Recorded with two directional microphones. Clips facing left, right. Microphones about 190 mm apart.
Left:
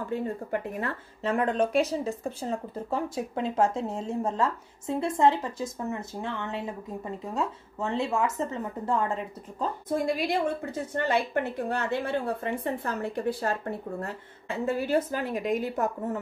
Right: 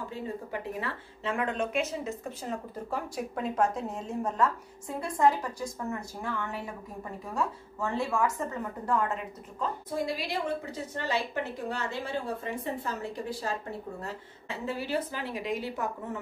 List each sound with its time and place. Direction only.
0.1 s speech: 50° left (ahead or behind); by 9.7 s 30° left (ahead or behind)
9.9 s a woman's voice: 50° left (ahead or behind)